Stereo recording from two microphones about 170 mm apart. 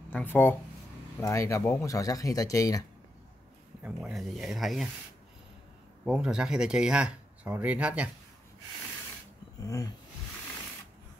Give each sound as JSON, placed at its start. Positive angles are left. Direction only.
{"t": 0.1, "sound": "speech", "side_deg": 10}
{"t": 3.8, "sound": "speech", "side_deg": 0}
{"t": 6.0, "sound": "speech", "side_deg": -5}
{"t": 9.6, "sound": "a sound", "side_deg": 20}